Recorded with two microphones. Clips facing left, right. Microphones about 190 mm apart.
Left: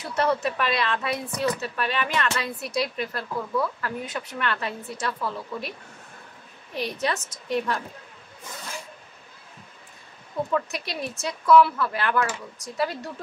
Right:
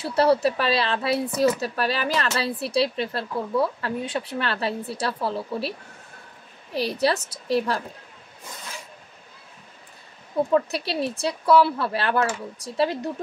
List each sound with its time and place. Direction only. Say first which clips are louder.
0.0 s speech: right 5 dB; 30° right (ahead or behind)
10.5 s speech: right 6 dB; 30° right (ahead or behind)